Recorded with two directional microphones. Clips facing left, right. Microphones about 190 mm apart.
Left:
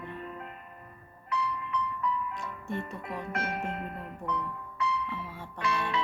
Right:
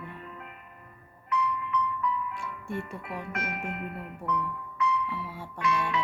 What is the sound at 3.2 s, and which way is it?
Music, 30° left (ahead or behind).